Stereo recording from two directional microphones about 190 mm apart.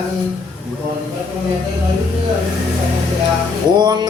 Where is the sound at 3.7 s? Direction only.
20° right (ahead or behind).